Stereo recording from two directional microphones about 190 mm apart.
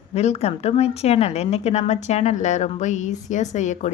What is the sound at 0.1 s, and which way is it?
Speech, 35° left (ahead or behind).